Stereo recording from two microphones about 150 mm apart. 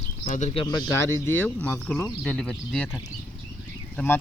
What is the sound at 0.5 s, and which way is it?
Speech, 30° left (ahead or behind).